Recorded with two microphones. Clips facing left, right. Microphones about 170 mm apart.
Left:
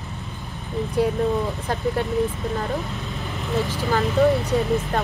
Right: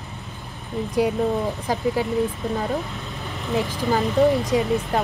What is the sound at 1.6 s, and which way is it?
Speech, 5° right (ahead or behind).